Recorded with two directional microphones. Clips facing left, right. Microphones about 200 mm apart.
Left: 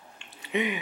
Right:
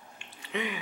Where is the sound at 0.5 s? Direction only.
20° left (ahead or behind).